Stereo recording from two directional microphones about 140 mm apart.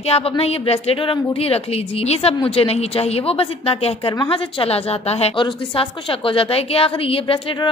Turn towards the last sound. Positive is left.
turn(degrees=40)  # may be behind; listen again after turning